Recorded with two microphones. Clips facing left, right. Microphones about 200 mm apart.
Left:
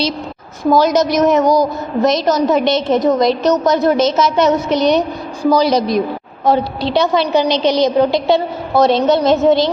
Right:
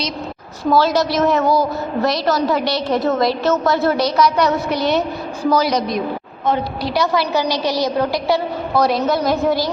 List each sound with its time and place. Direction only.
0.7 s a woman's voice: 15° left (ahead or behind)
5.6 s a woman's voice: 30° left (ahead or behind)